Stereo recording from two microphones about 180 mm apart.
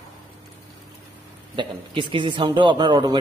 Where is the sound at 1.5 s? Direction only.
25° right (ahead or behind).